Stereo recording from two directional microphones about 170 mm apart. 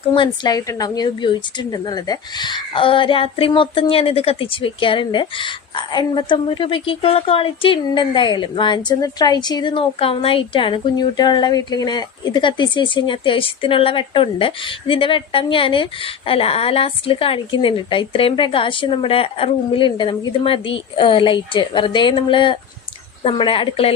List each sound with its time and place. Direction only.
0.1 s a woman's voice: 25° left (ahead or behind)